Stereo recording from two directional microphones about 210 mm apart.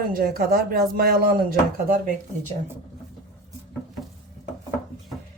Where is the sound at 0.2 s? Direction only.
45° right (ahead or behind).